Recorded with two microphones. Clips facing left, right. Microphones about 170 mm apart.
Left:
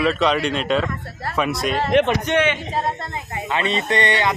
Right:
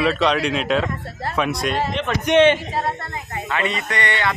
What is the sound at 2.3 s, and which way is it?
Speech, 15° right (ahead or behind).